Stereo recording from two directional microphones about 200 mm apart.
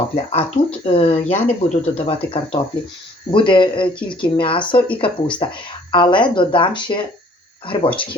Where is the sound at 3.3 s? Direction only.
25° left (ahead or behind).